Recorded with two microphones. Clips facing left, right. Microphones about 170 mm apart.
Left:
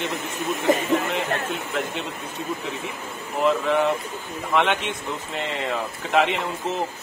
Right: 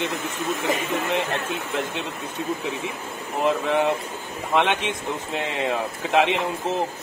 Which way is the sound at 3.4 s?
15° right (ahead or behind).